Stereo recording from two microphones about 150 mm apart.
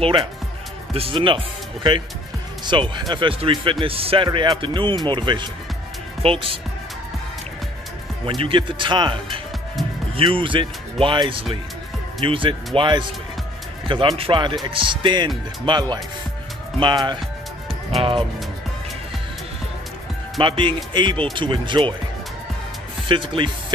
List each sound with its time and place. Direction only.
0.0 s speech: 40° right (ahead or behind)
8.3 s speech: 35° right (ahead or behind)
14.1 s speech: 35° right (ahead or behind)
20.3 s speech: 35° right (ahead or behind)
23.0 s speech: 35° right (ahead or behind)